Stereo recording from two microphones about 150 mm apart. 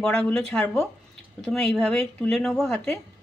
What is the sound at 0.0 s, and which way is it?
Speech, 5° left (ahead or behind).